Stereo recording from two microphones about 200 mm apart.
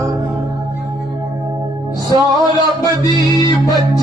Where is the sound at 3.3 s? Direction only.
20° left (ahead or behind).